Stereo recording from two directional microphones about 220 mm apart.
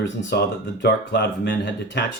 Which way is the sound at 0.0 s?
55° left (ahead or behind).